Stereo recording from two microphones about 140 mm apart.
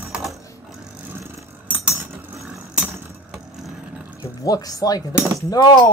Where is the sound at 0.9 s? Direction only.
10° right (ahead or behind).